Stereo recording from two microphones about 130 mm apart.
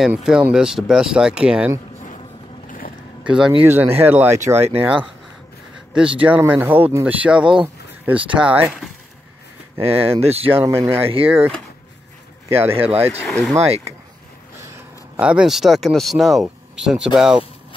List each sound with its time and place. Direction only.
0.0 s speech: 5° right (ahead or behind)
3.3 s speech: 5° right (ahead or behind)
3.6 s speech: 15° right (ahead or behind)
7.6 s a sound: 10° right (ahead or behind)
8.4 s speech: 10° right (ahead or behind)
9.8 s speech: 50° right (ahead or behind)
10.6 s speech: 20° right (ahead or behind)
12.7 s speech: 50° right (ahead or behind)
13.2 s speech: 10° left (ahead or behind)
15.1 s speech: 10° right (ahead or behind)